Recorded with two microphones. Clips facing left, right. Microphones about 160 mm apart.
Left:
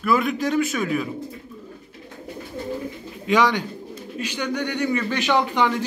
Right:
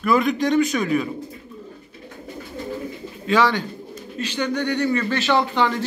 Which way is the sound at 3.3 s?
15° left (ahead or behind).